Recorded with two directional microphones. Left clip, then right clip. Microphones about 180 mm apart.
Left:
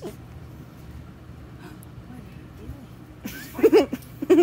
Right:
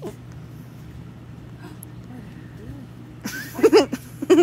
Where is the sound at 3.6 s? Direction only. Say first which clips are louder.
Right 2 dB; 10° left (ahead or behind).